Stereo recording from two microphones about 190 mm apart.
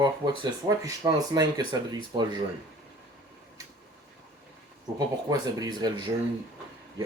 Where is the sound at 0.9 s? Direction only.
20° right (ahead or behind).